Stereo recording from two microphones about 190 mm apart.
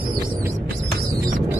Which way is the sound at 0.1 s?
20° right (ahead or behind).